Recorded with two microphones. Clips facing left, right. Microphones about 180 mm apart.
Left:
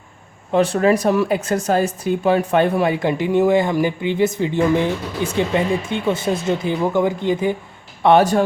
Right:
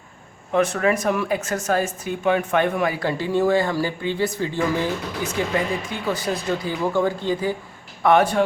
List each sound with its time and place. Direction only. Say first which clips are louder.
0.5 s speech: left 4 dB; 30° left (ahead or behind)
8.0 s speech: left 3 dB; 35° left (ahead or behind)